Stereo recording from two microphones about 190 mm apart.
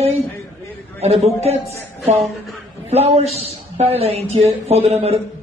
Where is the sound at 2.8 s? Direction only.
35° right (ahead or behind).